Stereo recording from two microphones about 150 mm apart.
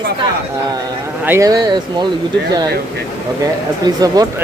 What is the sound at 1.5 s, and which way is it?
Speech, 25° right (ahead or behind).